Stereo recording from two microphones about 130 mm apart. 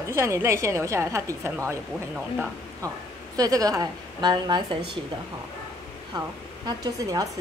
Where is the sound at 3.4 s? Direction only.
30° right (ahead or behind).